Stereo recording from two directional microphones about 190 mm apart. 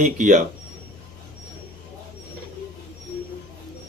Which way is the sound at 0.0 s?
40° right (ahead or behind).